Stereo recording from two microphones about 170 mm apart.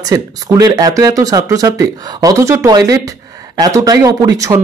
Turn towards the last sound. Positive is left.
turn(degrees=-20)  # may be behind; listen again after turning